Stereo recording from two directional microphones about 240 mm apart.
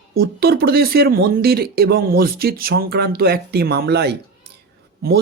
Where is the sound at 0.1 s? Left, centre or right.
Right.